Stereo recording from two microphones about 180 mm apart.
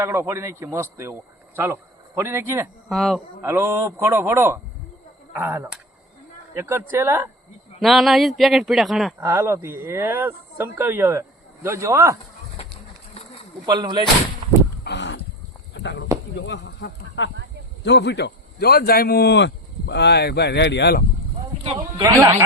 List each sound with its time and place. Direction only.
0.0 s speech: 15° right (ahead or behind)
2.9 s speech: centre (ahead or behind)
3.4 s speech: 15° right (ahead or behind)
7.8 s speech: centre (ahead or behind)
9.2 s speech: 15° right (ahead or behind)
13.7 s speech: 25° right (ahead or behind)
14.8 s a sound: 80° left
16.5 s a man's voice: 75° left (ahead or behind)
21.6 s speech: 30° right (ahead or behind)